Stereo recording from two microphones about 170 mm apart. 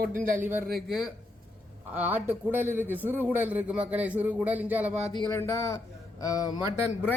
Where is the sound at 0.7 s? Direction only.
Centre (ahead or behind).